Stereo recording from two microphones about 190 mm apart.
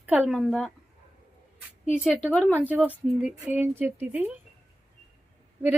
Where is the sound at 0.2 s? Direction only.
Centre (ahead or behind).